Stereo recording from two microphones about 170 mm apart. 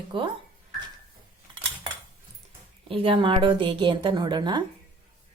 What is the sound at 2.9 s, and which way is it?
A woman's voice, 35° right (ahead or behind).